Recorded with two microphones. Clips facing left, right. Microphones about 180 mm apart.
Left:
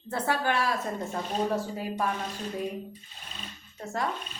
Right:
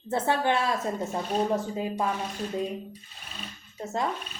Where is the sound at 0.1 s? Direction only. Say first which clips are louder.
Right 3 dB; 25° right (ahead or behind).